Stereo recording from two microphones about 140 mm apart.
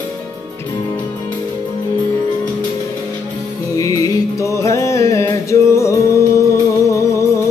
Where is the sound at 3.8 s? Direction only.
25° left (ahead or behind).